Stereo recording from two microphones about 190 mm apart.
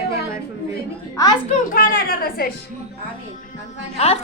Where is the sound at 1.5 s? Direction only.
45° left (ahead or behind).